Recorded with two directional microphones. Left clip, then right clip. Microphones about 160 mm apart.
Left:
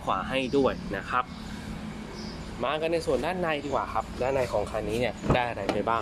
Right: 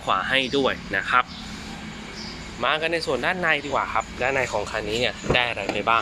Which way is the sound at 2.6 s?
Centre (ahead or behind).